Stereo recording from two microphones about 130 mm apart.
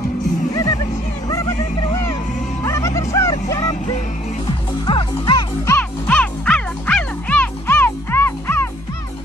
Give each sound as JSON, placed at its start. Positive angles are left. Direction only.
{"t": 2.6, "sound": "music", "side_deg": 25}
{"t": 4.8, "sound": "music", "side_deg": 35}
{"t": 5.7, "sound": "music", "side_deg": 10}